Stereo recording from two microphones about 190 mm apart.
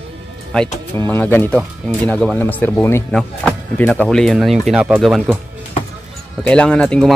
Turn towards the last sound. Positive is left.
turn(degrees=5)  # may be behind; listen again after turning